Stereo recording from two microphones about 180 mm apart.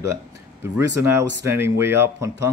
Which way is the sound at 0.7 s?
15° right (ahead or behind).